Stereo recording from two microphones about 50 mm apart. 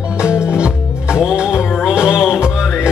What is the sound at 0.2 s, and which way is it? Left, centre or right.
Music, centre.